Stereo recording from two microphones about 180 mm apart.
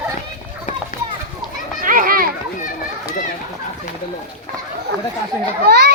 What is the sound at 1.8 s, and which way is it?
Children playing, 50° right (ahead or behind).